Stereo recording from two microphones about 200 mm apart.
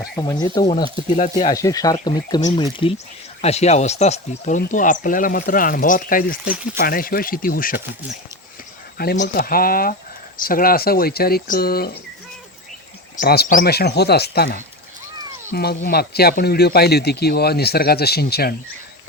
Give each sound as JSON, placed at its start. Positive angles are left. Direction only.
{"t": 0.2, "sound": "speech", "side_deg": 20}
{"t": 1.5, "sound": "speech", "side_deg": 15}
{"t": 3.4, "sound": "speech", "side_deg": 35}
{"t": 13.1, "sound": "speech", "side_deg": 50}